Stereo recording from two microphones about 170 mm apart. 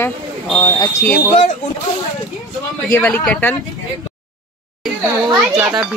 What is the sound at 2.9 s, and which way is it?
Speech, 10° left (ahead or behind).